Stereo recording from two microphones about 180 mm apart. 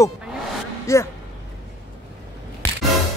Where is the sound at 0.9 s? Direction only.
15° left (ahead or behind).